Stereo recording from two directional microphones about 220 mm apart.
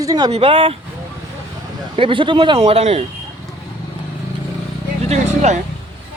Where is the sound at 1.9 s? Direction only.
25° right (ahead or behind).